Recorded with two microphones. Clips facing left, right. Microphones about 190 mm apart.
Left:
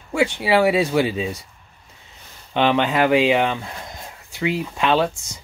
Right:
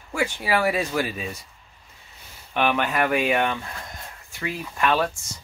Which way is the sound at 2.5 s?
25° left (ahead or behind).